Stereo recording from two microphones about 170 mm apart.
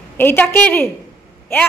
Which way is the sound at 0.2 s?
10° left (ahead or behind).